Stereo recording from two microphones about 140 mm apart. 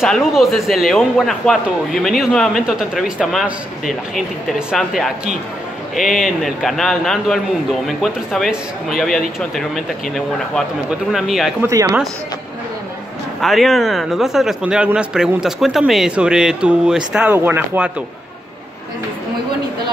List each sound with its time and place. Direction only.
0.0 s speech: centre (ahead or behind)
10.9 s speech: centre (ahead or behind)
11.6 s speech: 20° right (ahead or behind)
13.4 s speech: centre (ahead or behind)